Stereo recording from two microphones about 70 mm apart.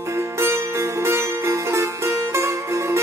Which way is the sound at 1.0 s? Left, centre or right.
Right.